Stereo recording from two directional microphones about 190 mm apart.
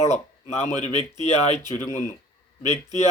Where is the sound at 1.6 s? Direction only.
20° right (ahead or behind).